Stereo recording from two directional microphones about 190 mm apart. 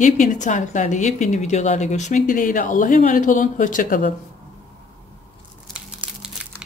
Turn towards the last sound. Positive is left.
turn(degrees=-5)  # may be behind; listen again after turning